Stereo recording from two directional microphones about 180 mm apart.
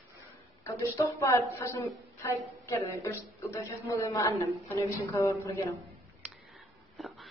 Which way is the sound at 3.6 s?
20° left (ahead or behind).